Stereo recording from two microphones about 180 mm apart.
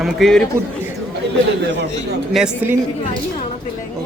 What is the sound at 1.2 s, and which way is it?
Chatter, 70° right (ahead or behind).